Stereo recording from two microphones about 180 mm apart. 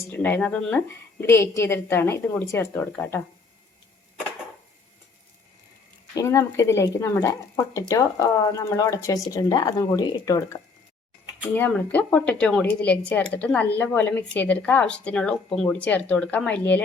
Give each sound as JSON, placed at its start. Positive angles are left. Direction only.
{"t": 0.0, "sound": "a woman's voice", "side_deg": 10}
{"t": 6.1, "sound": "a woman's voice", "side_deg": 15}